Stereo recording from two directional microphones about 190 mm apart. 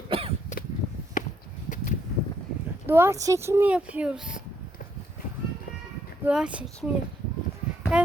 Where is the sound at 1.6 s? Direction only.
45° left (ahead or behind).